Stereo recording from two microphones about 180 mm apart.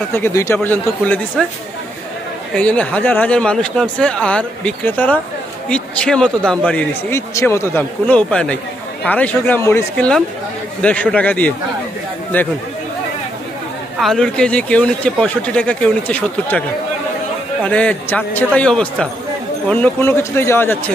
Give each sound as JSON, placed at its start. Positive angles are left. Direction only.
{"t": 0.1, "sound": "speech", "side_deg": 15}
{"t": 2.5, "sound": "speech", "side_deg": 5}
{"t": 13.9, "sound": "speech", "side_deg": 0}
{"t": 17.6, "sound": "speech", "side_deg": 5}